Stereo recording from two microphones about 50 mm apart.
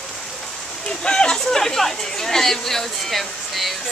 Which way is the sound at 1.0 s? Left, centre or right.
Centre.